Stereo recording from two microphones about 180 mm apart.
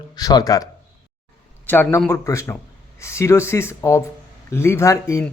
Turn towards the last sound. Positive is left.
turn(degrees=15)  # may be behind; listen again after turning